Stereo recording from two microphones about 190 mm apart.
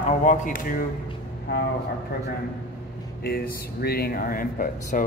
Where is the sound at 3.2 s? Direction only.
55° left (ahead or behind).